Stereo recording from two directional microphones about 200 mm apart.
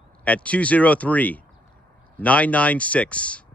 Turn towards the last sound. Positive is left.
turn(degrees=5)  # may be behind; listen again after turning